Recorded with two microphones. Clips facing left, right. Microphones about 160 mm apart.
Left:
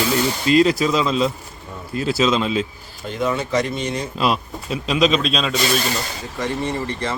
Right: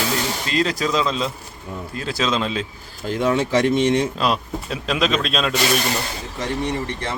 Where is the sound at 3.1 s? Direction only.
90° right.